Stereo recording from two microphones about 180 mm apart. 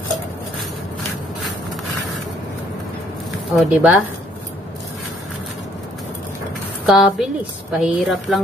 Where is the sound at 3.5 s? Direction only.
Centre (ahead or behind).